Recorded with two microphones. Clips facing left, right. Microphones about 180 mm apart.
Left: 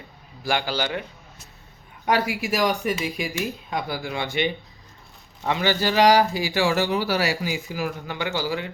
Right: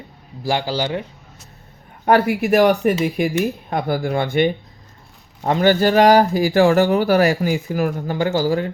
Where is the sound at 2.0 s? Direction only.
55° right (ahead or behind).